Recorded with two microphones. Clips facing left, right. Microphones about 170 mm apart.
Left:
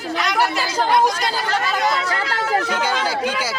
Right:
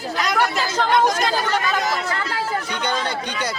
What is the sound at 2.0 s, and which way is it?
Speech, 80° left.